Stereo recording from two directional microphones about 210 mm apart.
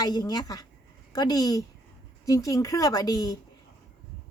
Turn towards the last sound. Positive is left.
turn(degrees=15)  # may be behind; listen again after turning